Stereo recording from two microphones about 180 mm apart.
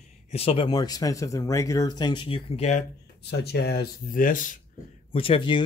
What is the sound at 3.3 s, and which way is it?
Speech, 65° left (ahead or behind).